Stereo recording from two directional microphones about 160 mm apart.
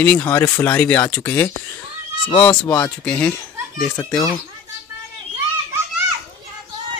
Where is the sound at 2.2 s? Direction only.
35° left (ahead or behind).